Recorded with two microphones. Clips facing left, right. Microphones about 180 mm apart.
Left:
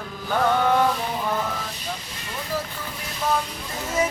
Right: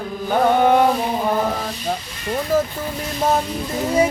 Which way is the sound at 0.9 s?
40° right (ahead or behind).